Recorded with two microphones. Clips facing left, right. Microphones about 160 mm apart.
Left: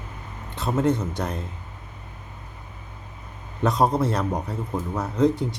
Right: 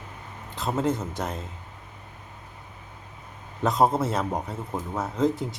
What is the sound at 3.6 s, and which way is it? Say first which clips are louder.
A man's voice: left 1 dB; centre (ahead or behind).